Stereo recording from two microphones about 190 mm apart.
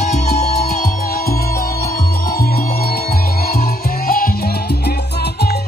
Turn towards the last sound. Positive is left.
turn(degrees=50)  # may be behind; listen again after turning